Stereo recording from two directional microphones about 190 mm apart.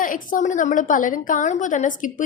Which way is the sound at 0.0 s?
45° left (ahead or behind).